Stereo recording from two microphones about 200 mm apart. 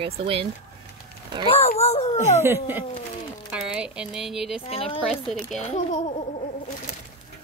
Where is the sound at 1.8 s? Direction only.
30° left (ahead or behind).